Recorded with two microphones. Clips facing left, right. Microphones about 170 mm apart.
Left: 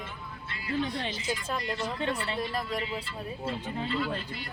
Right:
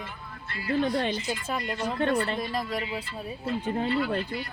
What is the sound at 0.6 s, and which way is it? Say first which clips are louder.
Speech: right 6 dB; 55° right (ahead or behind).